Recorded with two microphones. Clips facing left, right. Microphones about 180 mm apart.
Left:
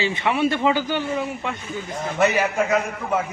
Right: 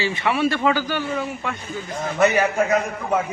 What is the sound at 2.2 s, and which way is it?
Speech, 40° right (ahead or behind).